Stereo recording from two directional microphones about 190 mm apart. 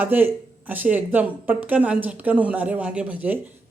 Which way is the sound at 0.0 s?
10° right (ahead or behind).